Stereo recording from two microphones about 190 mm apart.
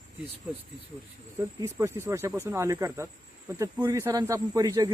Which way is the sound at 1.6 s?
15° right (ahead or behind).